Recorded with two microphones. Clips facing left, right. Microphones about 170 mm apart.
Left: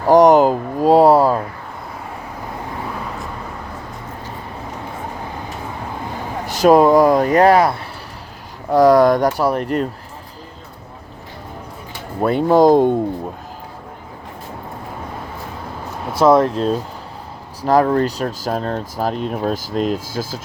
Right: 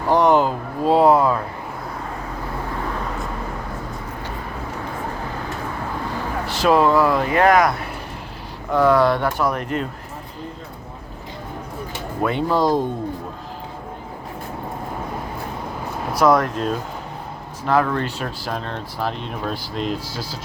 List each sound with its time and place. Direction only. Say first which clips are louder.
0.1 s speech: left 6 dB; 45° left (ahead or behind)
6.5 s speech: left 6 dB; 45° left (ahead or behind)
12.2 s speech: left 7 dB; 45° left (ahead or behind)
16.1 s speech: left 4 dB; 25° left (ahead or behind); by 20.4 s 45° left (ahead or behind)